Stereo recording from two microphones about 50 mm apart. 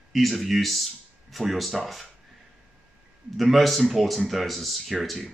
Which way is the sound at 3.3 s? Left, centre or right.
Centre.